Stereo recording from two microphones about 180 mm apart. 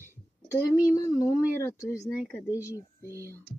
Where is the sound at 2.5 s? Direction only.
15° left (ahead or behind).